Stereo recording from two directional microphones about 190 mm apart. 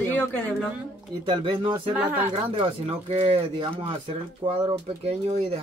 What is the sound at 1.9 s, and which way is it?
Speech, 10° right (ahead or behind).